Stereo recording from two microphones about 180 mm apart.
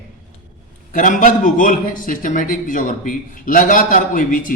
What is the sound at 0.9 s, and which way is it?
Speech, 45° left (ahead or behind).